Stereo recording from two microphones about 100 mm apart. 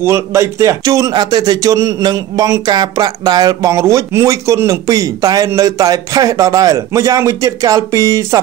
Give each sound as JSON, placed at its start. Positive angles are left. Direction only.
{"t": 0.0, "sound": "speech", "side_deg": -30}
{"t": 3.7, "sound": "speech", "side_deg": -30}